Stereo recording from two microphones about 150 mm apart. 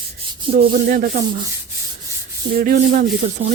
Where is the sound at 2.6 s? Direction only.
70° right (ahead or behind).